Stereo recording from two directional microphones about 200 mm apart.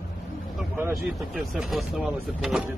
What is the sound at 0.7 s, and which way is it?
Speech, 5° right (ahead or behind).